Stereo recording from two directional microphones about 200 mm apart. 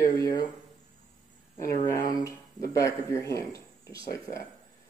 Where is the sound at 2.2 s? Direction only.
15° left (ahead or behind).